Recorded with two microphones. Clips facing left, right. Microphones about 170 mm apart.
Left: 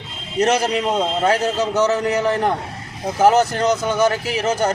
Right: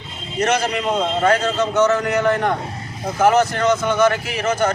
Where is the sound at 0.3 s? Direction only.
35° left (ahead or behind).